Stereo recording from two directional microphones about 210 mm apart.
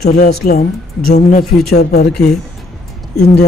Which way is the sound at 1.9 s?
50° left (ahead or behind).